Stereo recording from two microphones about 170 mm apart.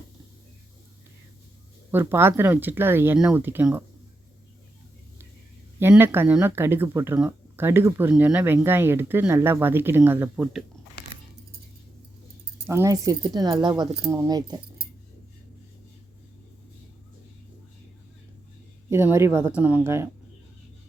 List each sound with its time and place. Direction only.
1.9 s speech: 10° right (ahead or behind)
5.8 s speech: 15° right (ahead or behind)
12.6 s speech: 15° right (ahead or behind)
18.9 s speech: 15° right (ahead or behind)